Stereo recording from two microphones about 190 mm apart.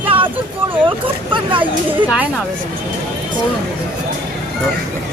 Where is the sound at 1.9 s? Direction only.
10° right (ahead or behind).